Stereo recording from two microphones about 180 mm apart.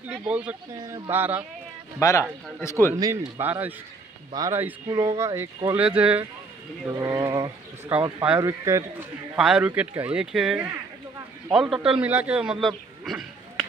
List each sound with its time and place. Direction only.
0.1 s speech: 10° right (ahead or behind)
2.0 s a man's voice: 15° left (ahead or behind)
3.0 s speech: 15° right (ahead or behind)
6.9 s speech: 15° right (ahead or behind)
7.9 s speech: 10° right (ahead or behind)
9.4 s a man's voice: 5° right (ahead or behind)